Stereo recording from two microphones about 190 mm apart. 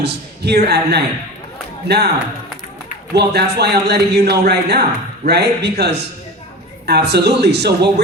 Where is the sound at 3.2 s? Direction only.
60° right (ahead or behind).